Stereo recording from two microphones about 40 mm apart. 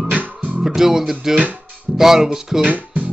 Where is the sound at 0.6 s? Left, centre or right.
Centre.